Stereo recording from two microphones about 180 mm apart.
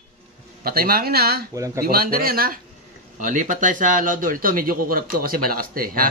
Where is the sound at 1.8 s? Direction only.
55° right (ahead or behind).